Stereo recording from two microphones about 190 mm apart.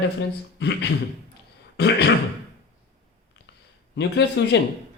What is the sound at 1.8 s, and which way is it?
Speech, 60° left (ahead or behind).